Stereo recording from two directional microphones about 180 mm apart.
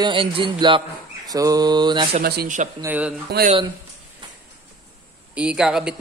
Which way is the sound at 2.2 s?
55° right (ahead or behind).